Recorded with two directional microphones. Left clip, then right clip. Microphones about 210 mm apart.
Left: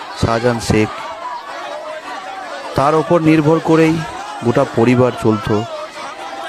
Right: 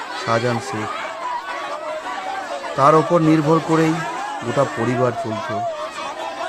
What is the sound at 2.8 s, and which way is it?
Speech, 40° left (ahead or behind).